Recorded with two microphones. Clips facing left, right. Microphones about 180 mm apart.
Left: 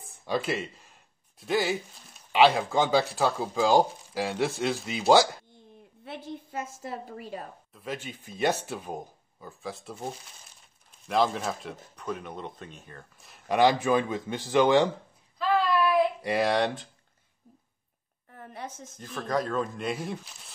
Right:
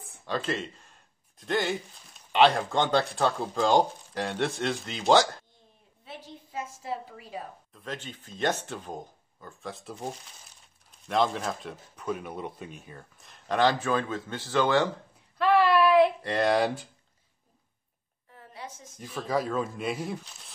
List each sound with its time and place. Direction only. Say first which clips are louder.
0.3 s speech: left 2 dB; 10° left (ahead or behind)
6.0 s a woman's voice: left 6 dB; 45° left (ahead or behind)
7.7 s speech: left 3 dB; 10° left (ahead or behind); by 13.0 s 10° right (ahead or behind)
13.2 s speech: left 2 dB; 10° left (ahead or behind)
15.3 s a sound: right 3 dB; 70° right (ahead or behind)
16.2 s speech: right 1 dB; 10° left (ahead or behind)
18.3 s a sound: left 3 dB; 50° left (ahead or behind)
18.9 s speech: even; 5° right (ahead or behind)